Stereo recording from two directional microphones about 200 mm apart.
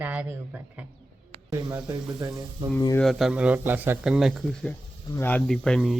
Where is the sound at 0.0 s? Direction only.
10° right (ahead or behind).